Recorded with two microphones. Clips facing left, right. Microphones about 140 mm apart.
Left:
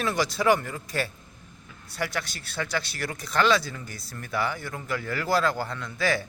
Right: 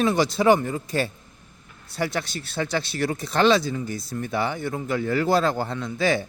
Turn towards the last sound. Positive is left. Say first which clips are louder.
# right 4 dB
turn(degrees=-25)  # may be behind; listen again after turning